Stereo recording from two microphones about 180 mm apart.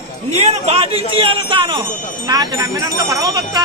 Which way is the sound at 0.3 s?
35° right (ahead or behind).